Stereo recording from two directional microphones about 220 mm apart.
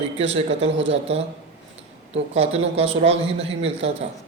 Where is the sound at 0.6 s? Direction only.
55° right (ahead or behind).